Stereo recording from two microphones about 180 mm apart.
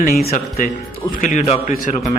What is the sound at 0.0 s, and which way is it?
Speech, 50° left (ahead or behind).